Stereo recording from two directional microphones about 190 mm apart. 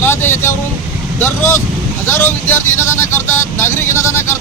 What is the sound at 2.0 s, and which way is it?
Speech, 10° left (ahead or behind).